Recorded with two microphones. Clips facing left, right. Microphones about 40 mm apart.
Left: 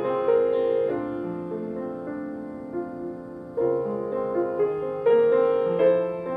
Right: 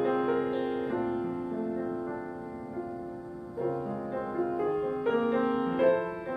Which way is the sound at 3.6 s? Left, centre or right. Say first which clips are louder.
Left 9 dB; centre.